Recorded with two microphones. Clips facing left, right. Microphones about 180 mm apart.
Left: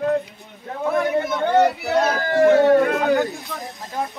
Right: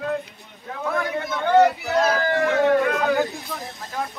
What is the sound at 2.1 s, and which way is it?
Speech, 35° left (ahead or behind).